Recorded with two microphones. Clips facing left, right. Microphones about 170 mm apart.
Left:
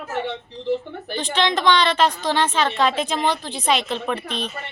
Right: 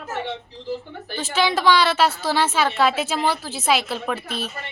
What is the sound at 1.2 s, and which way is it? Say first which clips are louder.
A woman's voice: even; 5° right (ahead or behind).